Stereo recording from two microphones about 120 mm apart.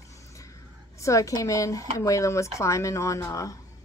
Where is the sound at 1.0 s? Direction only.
25° left (ahead or behind).